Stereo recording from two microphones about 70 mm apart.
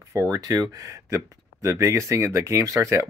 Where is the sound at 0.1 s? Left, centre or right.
Right.